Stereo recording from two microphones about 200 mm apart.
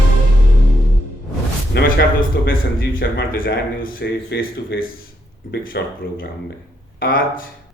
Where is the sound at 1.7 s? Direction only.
55° left (ahead or behind).